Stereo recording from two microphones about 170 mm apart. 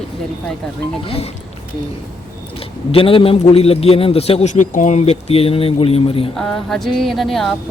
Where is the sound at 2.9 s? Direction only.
30° left (ahead or behind).